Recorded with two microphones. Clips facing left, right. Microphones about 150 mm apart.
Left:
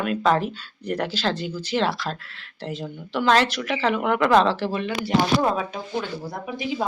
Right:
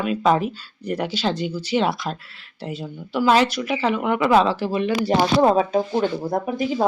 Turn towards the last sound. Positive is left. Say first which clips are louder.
# right 6 dB
turn(degrees=-45)  # may be behind; listen again after turning